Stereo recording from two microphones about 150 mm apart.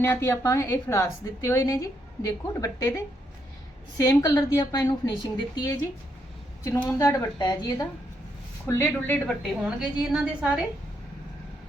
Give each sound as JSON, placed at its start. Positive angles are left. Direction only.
{"t": 0.0, "sound": "a woman's voice", "side_deg": 15}
{"t": 6.8, "sound": "a woman's voice", "side_deg": 20}
{"t": 9.2, "sound": "a woman's voice", "side_deg": -5}